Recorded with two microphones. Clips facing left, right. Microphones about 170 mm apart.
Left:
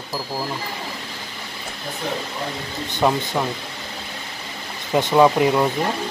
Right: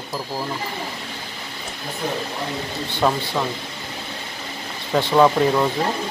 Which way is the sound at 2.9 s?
10° left (ahead or behind).